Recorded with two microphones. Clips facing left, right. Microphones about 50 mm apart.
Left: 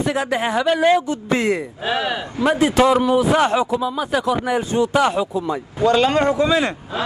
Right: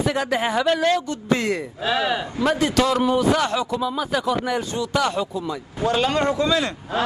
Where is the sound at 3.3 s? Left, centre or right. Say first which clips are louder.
Left 5 dB; left.